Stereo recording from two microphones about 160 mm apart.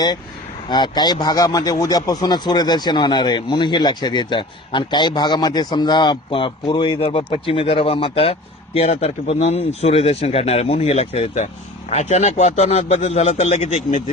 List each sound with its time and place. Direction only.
0.7 s speech: 25° left (ahead or behind); by 14.0 s 45° left (ahead or behind)